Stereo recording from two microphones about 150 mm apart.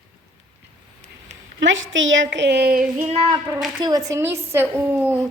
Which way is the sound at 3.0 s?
40° right (ahead or behind).